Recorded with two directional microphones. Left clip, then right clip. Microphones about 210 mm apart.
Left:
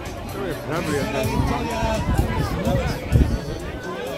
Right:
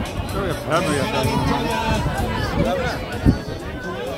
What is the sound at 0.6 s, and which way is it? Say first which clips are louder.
Speech: right 5 dB; 40° right (ahead or behind).